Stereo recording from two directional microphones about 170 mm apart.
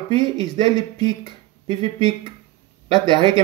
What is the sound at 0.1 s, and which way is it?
Speech, 25° left (ahead or behind).